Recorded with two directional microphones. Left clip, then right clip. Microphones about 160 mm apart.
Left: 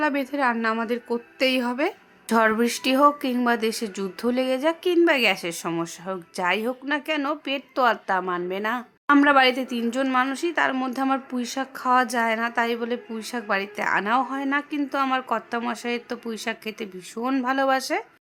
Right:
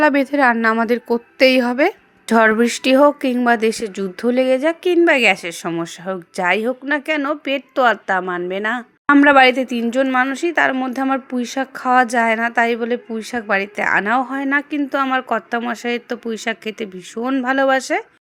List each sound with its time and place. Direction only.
0.0 s a woman's voice: 40° right (ahead or behind)